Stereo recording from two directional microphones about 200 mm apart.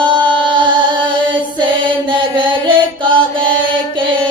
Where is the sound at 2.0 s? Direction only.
25° right (ahead or behind).